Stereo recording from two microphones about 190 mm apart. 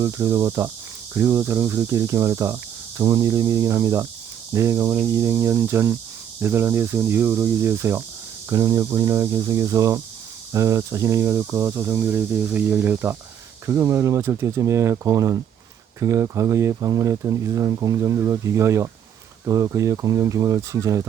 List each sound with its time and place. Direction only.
0.0 s speech: 15° right (ahead or behind)